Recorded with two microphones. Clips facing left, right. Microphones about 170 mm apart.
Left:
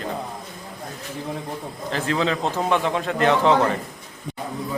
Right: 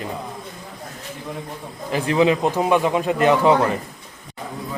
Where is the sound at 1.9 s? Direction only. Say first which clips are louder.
Right 5 dB; 15° right (ahead or behind).